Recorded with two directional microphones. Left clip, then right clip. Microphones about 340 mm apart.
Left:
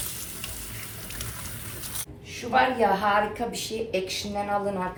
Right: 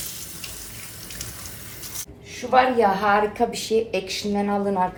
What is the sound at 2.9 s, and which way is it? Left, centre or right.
Speech, right.